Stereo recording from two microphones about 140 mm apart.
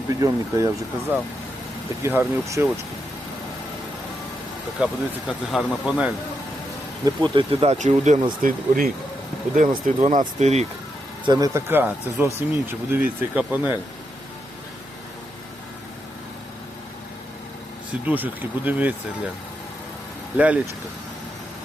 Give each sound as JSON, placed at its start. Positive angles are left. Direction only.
{"t": 0.1, "sound": "speech", "side_deg": -25}
{"t": 2.0, "sound": "speech", "side_deg": -15}
{"t": 4.8, "sound": "speech", "side_deg": -5}
{"t": 7.0, "sound": "speech", "side_deg": -35}
{"t": 8.4, "sound": "speech", "side_deg": -80}
{"t": 9.6, "sound": "speech", "side_deg": -70}
{"t": 10.2, "sound": "speech", "side_deg": -50}
{"t": 11.3, "sound": "speech", "side_deg": -25}
{"t": 18.0, "sound": "speech", "side_deg": -10}
{"t": 20.3, "sound": "speech", "side_deg": -10}